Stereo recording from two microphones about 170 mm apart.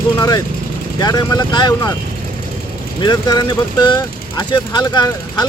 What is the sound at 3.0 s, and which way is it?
Speech, 25° left (ahead or behind).